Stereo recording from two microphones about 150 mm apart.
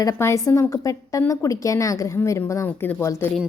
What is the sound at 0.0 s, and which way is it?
A woman's voice, 20° left (ahead or behind).